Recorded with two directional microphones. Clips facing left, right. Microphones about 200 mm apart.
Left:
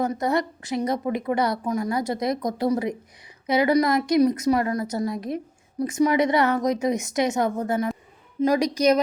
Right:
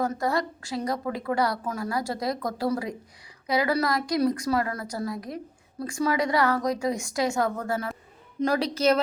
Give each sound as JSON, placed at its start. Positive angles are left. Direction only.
{"t": 0.0, "sound": "a woman's voice", "side_deg": 20}